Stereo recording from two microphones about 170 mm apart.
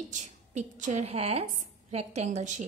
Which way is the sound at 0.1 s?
45° right (ahead or behind).